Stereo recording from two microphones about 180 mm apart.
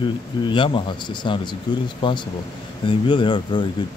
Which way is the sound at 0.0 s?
25° left (ahead or behind).